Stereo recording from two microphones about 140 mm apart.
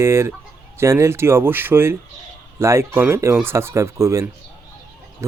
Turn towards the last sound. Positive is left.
turn(degrees=-20)  # may be behind; listen again after turning